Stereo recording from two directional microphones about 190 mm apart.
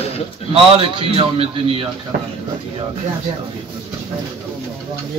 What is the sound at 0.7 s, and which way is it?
A man's voice, 30° right (ahead or behind).